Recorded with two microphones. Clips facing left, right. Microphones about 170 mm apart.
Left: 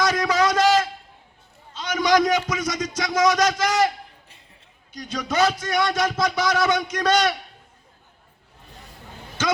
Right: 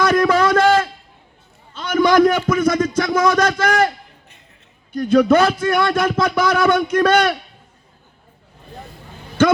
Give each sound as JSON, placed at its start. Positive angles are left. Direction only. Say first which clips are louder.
{"t": 0.0, "sound": "a sound", "louder": "right 6 dB", "side_deg": -55}
{"t": 1.7, "sound": "music", "louder": "right 6 dB", "side_deg": -55}
{"t": 4.9, "sound": "speech", "louder": "right 16 dB", "side_deg": -55}